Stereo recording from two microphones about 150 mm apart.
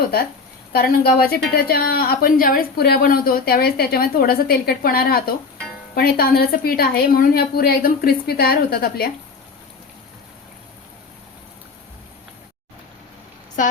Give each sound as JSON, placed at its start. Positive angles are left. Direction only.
{"t": 0.7, "sound": "a woman's voice", "side_deg": 90}